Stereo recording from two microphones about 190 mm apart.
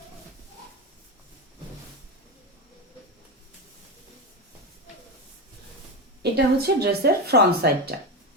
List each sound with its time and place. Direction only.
6.3 s speech: 55° right (ahead or behind)